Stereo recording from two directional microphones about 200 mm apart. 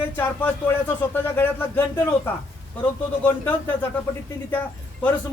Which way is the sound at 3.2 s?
10° left (ahead or behind).